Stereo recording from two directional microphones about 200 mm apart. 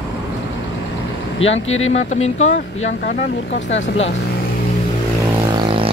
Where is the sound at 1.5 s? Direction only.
85° left.